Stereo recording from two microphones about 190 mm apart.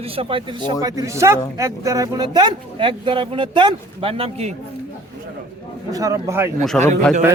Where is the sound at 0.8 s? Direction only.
15° right (ahead or behind); by 4.5 s 30° right (ahead or behind).